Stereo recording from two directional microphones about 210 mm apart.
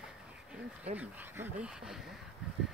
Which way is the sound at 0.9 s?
10° right (ahead or behind).